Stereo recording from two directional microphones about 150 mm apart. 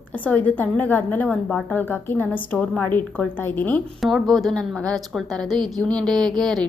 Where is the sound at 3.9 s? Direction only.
Centre (ahead or behind).